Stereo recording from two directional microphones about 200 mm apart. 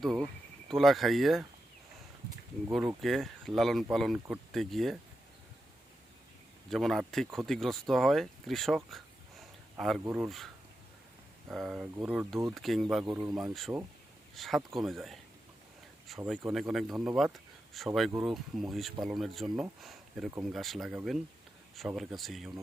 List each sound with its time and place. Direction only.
0.0 s speech: centre (ahead or behind)
2.7 s speech: centre (ahead or behind)
6.7 s speech: centre (ahead or behind)
9.4 s a sound: centre (ahead or behind)
10.0 s speech: 10° right (ahead or behind)
10.2 s speech: centre (ahead or behind)
13.1 s speech: 15° right (ahead or behind)
13.5 s speech: centre (ahead or behind)